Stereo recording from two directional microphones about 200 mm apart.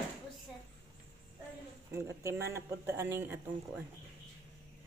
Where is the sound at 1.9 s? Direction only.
15° right (ahead or behind).